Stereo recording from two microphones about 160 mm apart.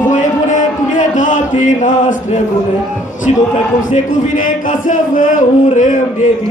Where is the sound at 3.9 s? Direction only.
55° left (ahead or behind).